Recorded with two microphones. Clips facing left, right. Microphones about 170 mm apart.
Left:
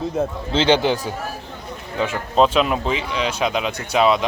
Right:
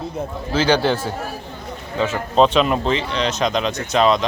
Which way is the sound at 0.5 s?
25° left (ahead or behind).